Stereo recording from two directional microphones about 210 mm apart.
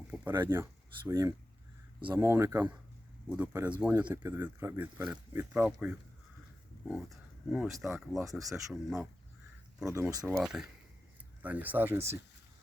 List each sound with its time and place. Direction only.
0.5 s speech: 10° right (ahead or behind)
8.3 s speech: 15° right (ahead or behind)
8.7 s speech: centre (ahead or behind)
9.8 s speech: 10° right (ahead or behind)
10.2 s speech: centre (ahead or behind)